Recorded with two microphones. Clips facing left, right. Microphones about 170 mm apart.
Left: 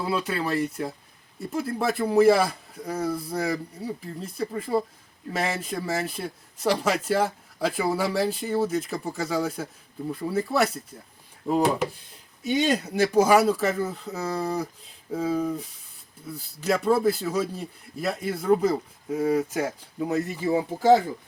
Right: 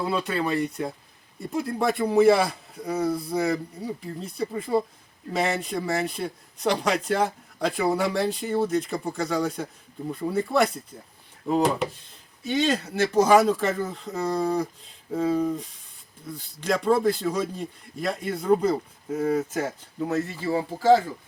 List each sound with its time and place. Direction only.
0.0 s speech: 5° left (ahead or behind)